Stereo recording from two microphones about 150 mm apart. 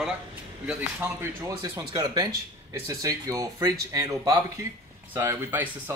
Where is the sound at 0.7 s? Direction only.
15° right (ahead or behind).